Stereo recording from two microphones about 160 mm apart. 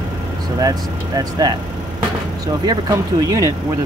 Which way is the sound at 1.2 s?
20° right (ahead or behind).